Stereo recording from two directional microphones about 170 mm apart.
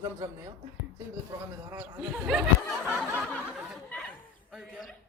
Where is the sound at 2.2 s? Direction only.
5° right (ahead or behind).